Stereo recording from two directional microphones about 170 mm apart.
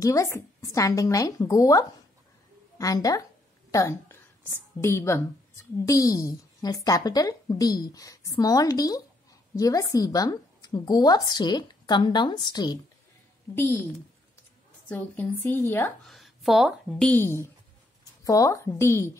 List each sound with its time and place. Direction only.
0.0 s a woman's voice: 20° left (ahead or behind)
13.6 s a woman's voice: 10° left (ahead or behind)
14.9 s a woman's voice: 10° left (ahead or behind)
16.1 s a woman's voice: centre (ahead or behind)
17.1 s a woman's voice: 15° left (ahead or behind)